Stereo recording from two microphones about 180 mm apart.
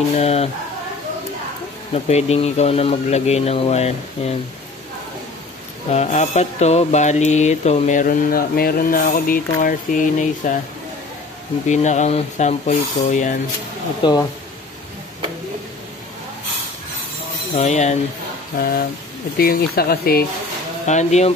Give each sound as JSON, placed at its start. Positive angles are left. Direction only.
{"t": 0.2, "sound": "speech", "side_deg": 35}
{"t": 2.0, "sound": "speech", "side_deg": 35}
{"t": 5.9, "sound": "mantra", "side_deg": 40}
{"t": 11.6, "sound": "speech", "side_deg": 40}
{"t": 14.0, "sound": "speech", "side_deg": 25}
{"t": 17.6, "sound": "speech", "side_deg": 40}
{"t": 18.6, "sound": "speech", "side_deg": 55}
{"t": 20.8, "sound": "speech", "side_deg": 40}